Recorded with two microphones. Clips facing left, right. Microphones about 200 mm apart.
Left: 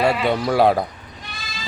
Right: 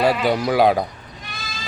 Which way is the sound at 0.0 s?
5° right (ahead or behind).